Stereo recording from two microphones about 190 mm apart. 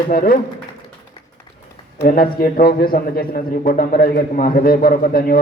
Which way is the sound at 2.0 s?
50° left (ahead or behind).